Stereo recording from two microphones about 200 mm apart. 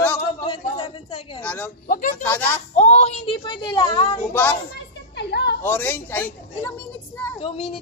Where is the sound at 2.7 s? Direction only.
35° left (ahead or behind).